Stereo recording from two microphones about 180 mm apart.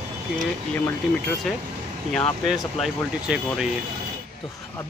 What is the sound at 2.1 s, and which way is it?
Speech, centre (ahead or behind).